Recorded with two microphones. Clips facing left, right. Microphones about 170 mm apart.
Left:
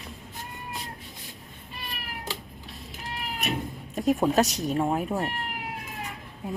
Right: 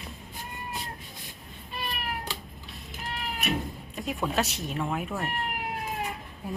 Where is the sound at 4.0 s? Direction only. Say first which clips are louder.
Left 7 dB; 40° left (ahead or behind).